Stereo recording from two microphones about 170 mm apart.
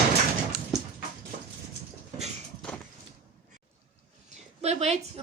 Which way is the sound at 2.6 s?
5° left (ahead or behind).